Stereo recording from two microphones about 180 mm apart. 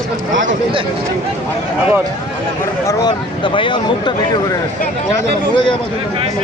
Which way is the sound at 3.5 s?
25° left (ahead or behind).